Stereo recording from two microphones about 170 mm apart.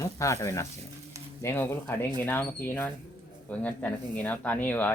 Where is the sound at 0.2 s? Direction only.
15° left (ahead or behind).